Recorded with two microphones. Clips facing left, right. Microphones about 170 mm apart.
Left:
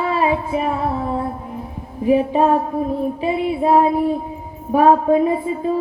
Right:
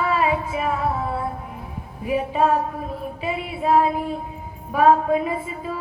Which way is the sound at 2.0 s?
35° left (ahead or behind).